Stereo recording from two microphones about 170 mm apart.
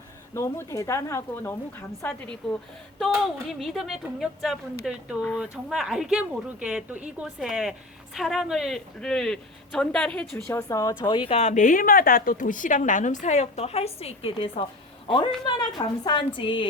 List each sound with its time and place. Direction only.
0.3 s speech: 15° left (ahead or behind)
3.5 s a woman's voice: centre (ahead or behind)
10.4 s speech: 20° left (ahead or behind)
11.3 s a woman's voice: 45° left (ahead or behind); by 16.6 s 30° left (ahead or behind)